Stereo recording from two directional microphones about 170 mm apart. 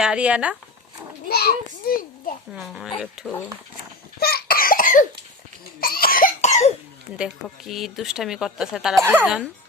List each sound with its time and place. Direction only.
0.0 s speech: 5° right (ahead or behind)
1.3 s a child's voice: 65° left (ahead or behind)
2.6 s speech: centre (ahead or behind)
4.2 s cough: 65° left (ahead or behind); by 6.7 s 45° left (ahead or behind)
7.4 s speech: centre (ahead or behind)